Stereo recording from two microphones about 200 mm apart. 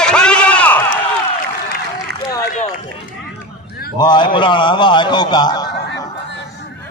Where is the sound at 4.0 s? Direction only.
20° left (ahead or behind).